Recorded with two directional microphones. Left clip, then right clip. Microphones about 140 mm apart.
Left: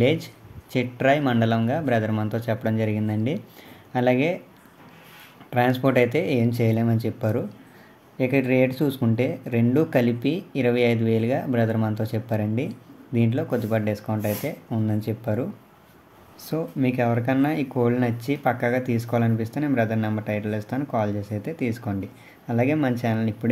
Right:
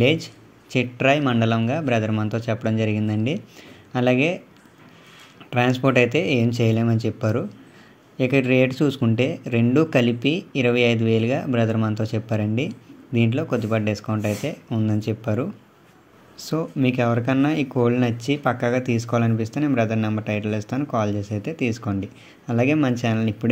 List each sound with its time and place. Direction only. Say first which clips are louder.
0.0 s speech: right 2 dB; 10° right (ahead or behind)
5.5 s speech: right 1 dB; 15° right (ahead or behind)